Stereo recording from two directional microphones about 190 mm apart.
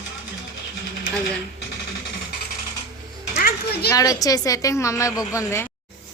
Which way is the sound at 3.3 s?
55° left (ahead or behind).